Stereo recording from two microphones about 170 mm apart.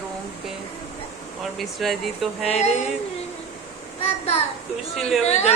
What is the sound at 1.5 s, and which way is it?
Speech, centre (ahead or behind).